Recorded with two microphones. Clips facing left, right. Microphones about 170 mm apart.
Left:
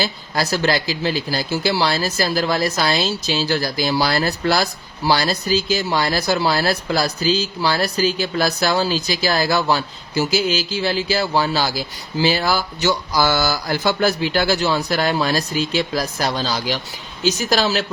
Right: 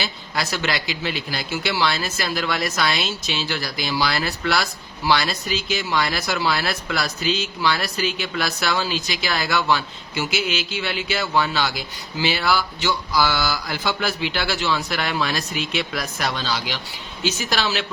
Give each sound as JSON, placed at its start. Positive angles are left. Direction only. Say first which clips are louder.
{"t": 0.0, "sound": "speech", "louder": "left 5 dB", "side_deg": 35}